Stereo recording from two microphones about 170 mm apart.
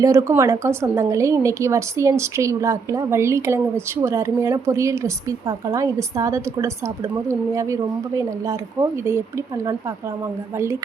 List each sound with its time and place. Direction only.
0.0 s a woman's voice: 20° right (ahead or behind)